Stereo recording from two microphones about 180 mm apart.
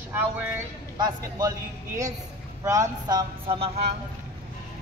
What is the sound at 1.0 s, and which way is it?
A man's voice, 20° right (ahead or behind).